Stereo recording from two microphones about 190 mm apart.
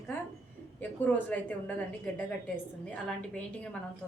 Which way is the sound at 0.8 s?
10° left (ahead or behind).